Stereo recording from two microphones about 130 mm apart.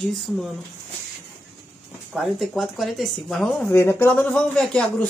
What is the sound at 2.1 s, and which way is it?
Speech, centre (ahead or behind).